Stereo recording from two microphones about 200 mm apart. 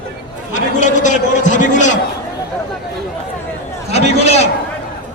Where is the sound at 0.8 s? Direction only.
40° left (ahead or behind).